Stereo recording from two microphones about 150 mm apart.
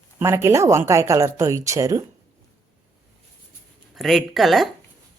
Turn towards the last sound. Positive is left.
turn(degrees=0)  # may be behind; listen again after turning